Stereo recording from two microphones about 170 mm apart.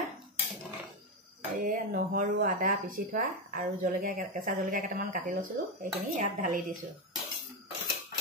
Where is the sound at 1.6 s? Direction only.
50° right (ahead or behind).